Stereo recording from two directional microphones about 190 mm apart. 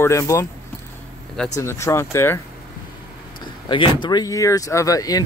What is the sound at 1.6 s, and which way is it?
Speech, 15° left (ahead or behind).